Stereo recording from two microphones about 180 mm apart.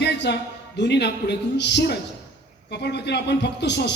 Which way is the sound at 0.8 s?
70° left (ahead or behind).